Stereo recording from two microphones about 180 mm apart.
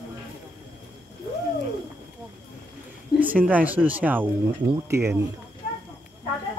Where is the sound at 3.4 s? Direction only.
10° right (ahead or behind).